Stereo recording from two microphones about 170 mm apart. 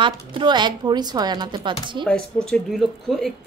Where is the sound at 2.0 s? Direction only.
5° left (ahead or behind).